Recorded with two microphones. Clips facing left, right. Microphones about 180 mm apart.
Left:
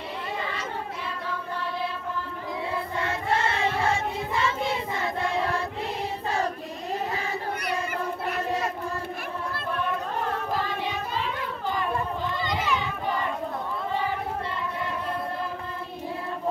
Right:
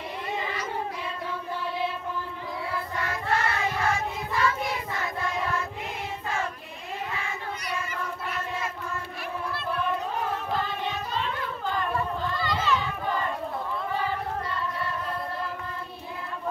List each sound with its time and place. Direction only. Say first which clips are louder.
2.7 s choir: left 2 dB; 25° left (ahead or behind)
7.1 s child singing: left 4 dB; 40° left (ahead or behind)
8.5 s child singing: left 5 dB; 40° left (ahead or behind)
12.3 s children playing: even; 20° left (ahead or behind)